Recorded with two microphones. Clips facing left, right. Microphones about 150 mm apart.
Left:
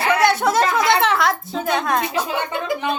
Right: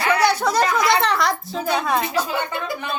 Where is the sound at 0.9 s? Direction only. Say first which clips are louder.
Left 2 dB; centre (ahead or behind).